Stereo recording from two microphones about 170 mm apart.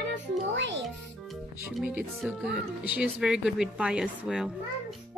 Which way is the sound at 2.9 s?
5° right (ahead or behind).